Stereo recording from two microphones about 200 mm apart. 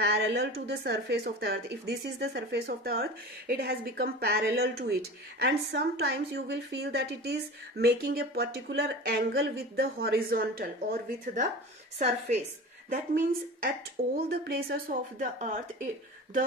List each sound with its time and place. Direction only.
0.0 s speech: 55° right (ahead or behind)
12.0 s a woman's voice: 30° right (ahead or behind)
12.9 s speech: 45° right (ahead or behind)